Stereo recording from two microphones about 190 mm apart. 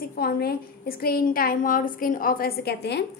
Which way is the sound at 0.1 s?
55° left (ahead or behind).